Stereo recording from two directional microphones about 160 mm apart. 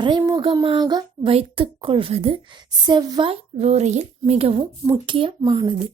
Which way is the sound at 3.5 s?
45° right (ahead or behind).